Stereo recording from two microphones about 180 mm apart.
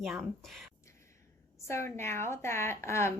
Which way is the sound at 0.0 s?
Centre (ahead or behind).